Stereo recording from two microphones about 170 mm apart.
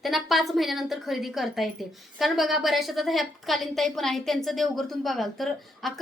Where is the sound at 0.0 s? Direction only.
Centre (ahead or behind).